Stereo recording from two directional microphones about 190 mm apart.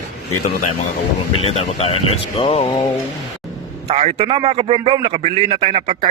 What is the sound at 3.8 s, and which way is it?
A man's voice, 35° right (ahead or behind).